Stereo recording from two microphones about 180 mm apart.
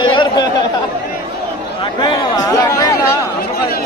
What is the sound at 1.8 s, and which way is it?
Speech, 25° left (ahead or behind).